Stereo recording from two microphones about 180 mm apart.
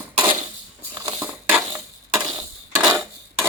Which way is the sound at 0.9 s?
20° right (ahead or behind).